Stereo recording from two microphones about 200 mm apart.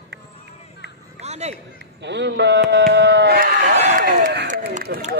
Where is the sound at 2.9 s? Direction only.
60° right (ahead or behind).